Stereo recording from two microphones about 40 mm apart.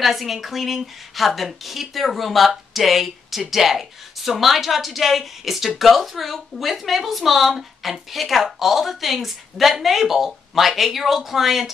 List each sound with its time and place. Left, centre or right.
0.0 s a woman's voice: centre